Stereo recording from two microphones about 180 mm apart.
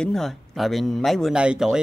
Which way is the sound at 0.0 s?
Centre (ahead or behind).